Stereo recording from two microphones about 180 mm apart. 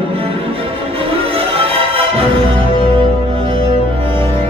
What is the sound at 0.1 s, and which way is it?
Music, 30° right (ahead or behind).